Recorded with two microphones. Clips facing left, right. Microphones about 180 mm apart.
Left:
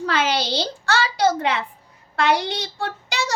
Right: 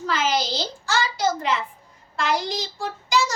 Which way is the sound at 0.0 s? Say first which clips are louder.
Left 2 dB; 65° left (ahead or behind).